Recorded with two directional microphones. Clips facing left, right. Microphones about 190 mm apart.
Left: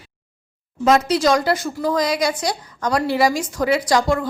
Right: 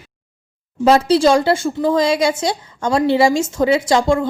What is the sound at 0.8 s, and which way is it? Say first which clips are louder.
Speech: right 4 dB; 30° right (ahead or behind).